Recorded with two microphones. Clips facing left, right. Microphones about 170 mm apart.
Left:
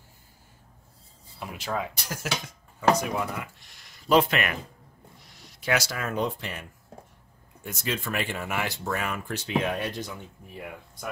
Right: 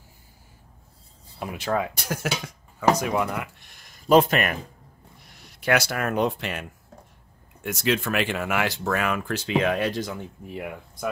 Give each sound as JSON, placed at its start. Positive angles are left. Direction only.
{"t": 1.4, "sound": "speech", "side_deg": -60}
{"t": 3.0, "sound": "speech", "side_deg": -85}
{"t": 5.3, "sound": "speech", "side_deg": -60}
{"t": 7.6, "sound": "speech", "side_deg": -80}